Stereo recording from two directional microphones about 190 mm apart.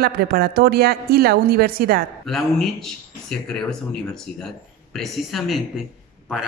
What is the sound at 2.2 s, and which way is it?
Speech, centre (ahead or behind).